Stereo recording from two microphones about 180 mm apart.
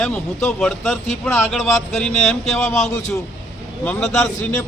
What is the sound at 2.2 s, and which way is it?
Speech, centre (ahead or behind).